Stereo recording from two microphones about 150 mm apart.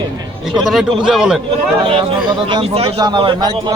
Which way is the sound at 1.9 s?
35° right (ahead or behind).